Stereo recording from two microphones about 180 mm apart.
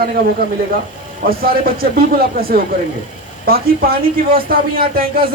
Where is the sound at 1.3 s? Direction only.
55° right (ahead or behind).